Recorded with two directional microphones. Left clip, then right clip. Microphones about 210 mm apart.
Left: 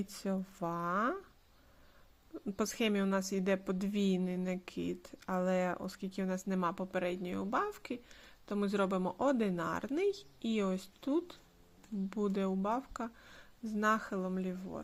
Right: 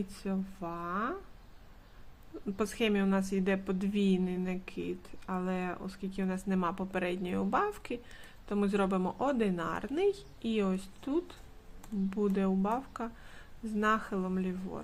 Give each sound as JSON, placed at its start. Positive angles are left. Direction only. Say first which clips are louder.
{"t": 0.1, "sound": "speech", "louder": "even", "side_deg": 35}
{"t": 2.6, "sound": "a woman's voice", "louder": "right 3 dB", "side_deg": 25}